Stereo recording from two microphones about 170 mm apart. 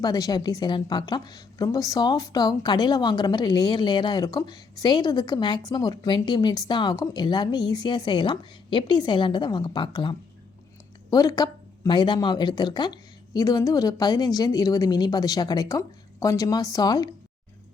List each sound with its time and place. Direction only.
0.0 s a woman's voice: 20° left (ahead or behind)